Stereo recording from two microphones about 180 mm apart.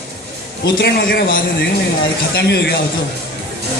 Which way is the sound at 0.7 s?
60° left (ahead or behind).